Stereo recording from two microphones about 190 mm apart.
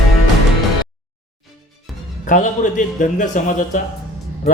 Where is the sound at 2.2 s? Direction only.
40° left (ahead or behind).